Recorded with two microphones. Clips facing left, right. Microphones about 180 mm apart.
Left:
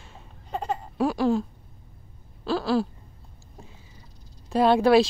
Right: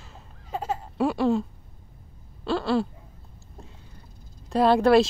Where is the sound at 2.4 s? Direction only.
Centre (ahead or behind).